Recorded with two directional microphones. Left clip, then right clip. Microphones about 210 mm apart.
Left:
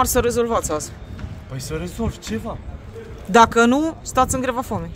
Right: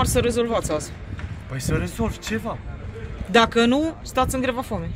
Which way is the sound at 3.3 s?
15° left (ahead or behind).